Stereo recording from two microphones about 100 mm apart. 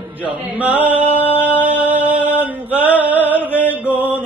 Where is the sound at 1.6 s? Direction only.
15° right (ahead or behind).